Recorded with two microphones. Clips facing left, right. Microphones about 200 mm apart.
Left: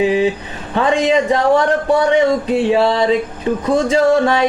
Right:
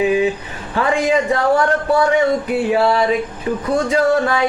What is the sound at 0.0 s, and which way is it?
Speech, 25° left (ahead or behind).